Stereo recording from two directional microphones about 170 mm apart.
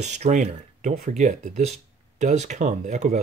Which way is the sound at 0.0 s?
45° right (ahead or behind).